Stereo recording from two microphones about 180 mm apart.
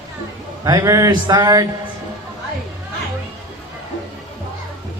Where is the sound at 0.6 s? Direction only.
20° right (ahead or behind).